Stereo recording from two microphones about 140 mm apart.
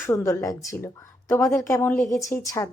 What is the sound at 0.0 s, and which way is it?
A woman's voice, 20° left (ahead or behind).